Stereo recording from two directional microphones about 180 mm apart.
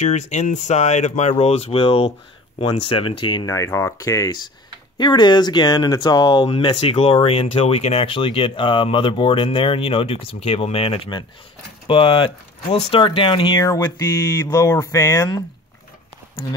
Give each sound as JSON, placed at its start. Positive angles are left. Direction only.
{"t": 0.0, "sound": "speech", "side_deg": 40}